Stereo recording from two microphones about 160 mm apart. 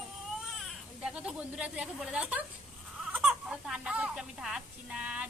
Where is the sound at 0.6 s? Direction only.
5° right (ahead or behind).